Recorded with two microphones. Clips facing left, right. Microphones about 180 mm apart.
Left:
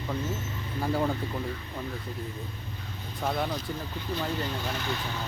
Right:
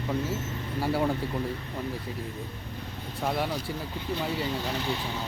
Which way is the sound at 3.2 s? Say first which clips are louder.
Right 1 dB; 5° right (ahead or behind).